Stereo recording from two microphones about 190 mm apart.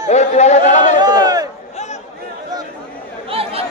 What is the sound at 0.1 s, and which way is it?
Speech, 35° left (ahead or behind).